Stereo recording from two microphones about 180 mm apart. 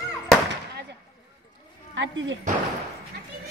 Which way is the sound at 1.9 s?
90° right.